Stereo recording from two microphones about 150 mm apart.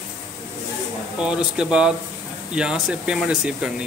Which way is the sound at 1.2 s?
5° right (ahead or behind).